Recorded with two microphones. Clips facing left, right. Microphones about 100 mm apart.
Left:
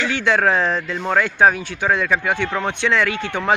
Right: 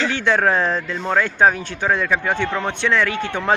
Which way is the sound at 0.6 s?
15° left (ahead or behind).